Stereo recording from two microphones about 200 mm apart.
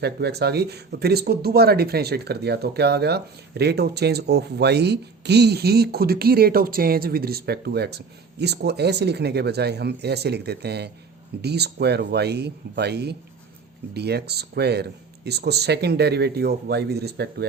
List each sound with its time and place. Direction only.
0.0 s speech: 55° right (ahead or behind)